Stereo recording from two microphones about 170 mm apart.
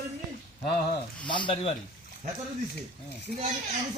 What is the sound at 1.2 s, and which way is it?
Speech, 30° left (ahead or behind).